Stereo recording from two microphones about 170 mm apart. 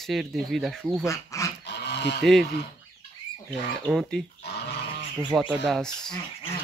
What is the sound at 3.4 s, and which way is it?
Speech, 5° left (ahead or behind).